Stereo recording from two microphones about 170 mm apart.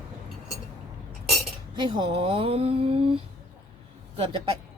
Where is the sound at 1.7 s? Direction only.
25° right (ahead or behind).